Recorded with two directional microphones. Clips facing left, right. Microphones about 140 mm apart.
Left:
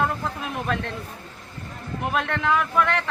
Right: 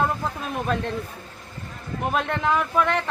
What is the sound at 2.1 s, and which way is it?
Speech, 35° right (ahead or behind).